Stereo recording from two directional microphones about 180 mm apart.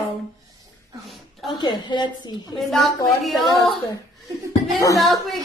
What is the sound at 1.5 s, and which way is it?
A woman's voice, 25° left (ahead or behind).